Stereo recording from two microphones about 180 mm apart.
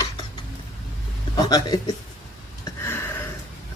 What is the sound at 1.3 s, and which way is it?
Speech, 20° left (ahead or behind).